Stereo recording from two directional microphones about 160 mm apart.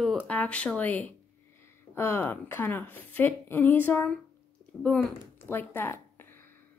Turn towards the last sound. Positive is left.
turn(degrees=15)  # may be behind; listen again after turning